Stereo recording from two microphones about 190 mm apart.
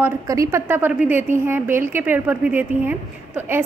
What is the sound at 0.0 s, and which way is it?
A woman's voice, 15° right (ahead or behind).